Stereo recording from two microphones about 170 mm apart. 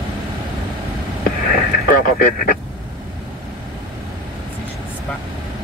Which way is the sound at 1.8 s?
55° left (ahead or behind).